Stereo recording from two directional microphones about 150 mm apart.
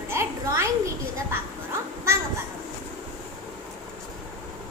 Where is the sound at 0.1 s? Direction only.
15° right (ahead or behind).